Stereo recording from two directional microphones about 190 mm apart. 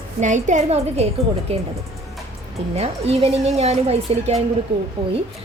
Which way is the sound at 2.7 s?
30° right (ahead or behind).